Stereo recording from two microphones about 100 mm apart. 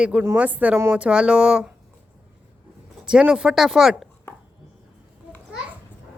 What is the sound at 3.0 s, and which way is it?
Speech, 5° right (ahead or behind).